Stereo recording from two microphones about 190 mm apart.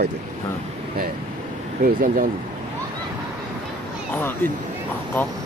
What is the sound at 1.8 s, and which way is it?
Speech, 45° right (ahead or behind).